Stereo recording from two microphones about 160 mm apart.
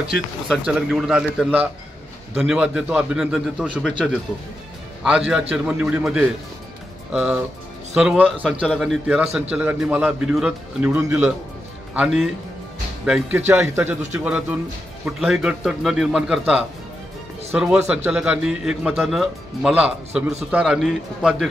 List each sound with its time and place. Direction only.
0.7 s a man's voice: 5° right (ahead or behind)
5.0 s a man's voice: 5° right (ahead or behind)